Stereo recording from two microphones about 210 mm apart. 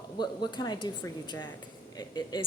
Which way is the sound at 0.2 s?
20° left (ahead or behind).